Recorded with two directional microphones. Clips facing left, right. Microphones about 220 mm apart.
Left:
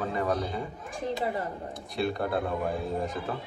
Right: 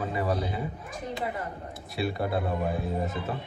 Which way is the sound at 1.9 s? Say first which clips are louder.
Even; 5° right (ahead or behind).